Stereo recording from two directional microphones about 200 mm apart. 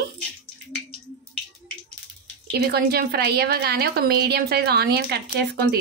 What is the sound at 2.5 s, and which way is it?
A woman's voice, 50° right (ahead or behind).